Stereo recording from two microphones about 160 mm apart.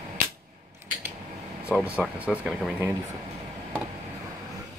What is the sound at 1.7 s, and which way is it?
Speech, 5° left (ahead or behind).